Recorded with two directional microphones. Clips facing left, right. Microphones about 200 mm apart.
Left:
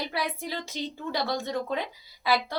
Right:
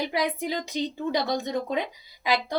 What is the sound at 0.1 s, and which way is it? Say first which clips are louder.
A woman's voice: right 5 dB; 15° right (ahead or behind).